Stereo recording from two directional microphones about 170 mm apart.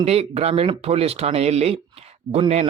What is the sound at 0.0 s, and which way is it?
Speech, 35° right (ahead or behind).